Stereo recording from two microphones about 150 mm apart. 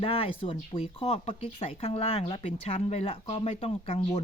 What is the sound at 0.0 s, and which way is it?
Speech, 40° left (ahead or behind).